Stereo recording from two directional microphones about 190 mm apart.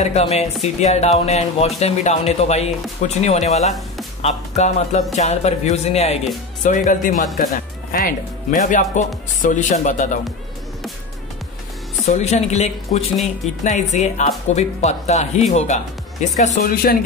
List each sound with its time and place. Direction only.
0.0 s speech: 35° left (ahead or behind)
12.1 s speech: 35° left (ahead or behind); by 17.0 s 50° left (ahead or behind)